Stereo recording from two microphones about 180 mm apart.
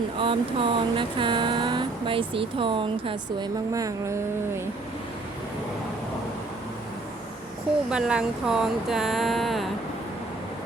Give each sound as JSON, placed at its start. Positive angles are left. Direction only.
{"t": 0.2, "sound": "speech", "side_deg": -30}
{"t": 7.9, "sound": "speech", "side_deg": -5}